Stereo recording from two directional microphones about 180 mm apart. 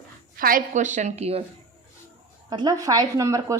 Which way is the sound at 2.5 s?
25° right (ahead or behind).